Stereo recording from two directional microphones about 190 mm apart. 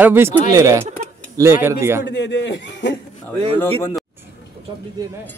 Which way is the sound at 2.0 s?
65° left (ahead or behind).